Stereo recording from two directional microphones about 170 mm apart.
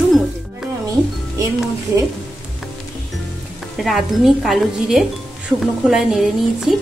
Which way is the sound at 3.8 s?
Centre (ahead or behind).